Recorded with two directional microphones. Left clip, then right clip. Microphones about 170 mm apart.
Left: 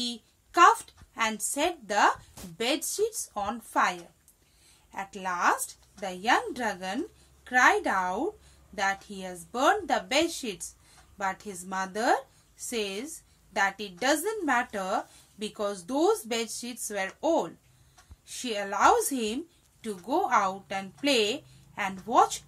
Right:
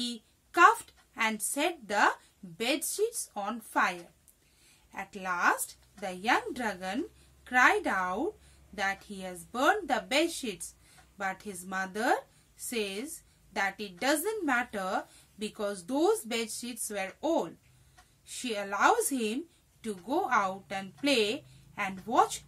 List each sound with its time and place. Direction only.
0.0 s a woman's voice: 25° right (ahead or behind)